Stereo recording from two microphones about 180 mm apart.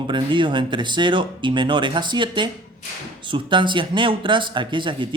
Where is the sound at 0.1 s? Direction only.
25° right (ahead or behind).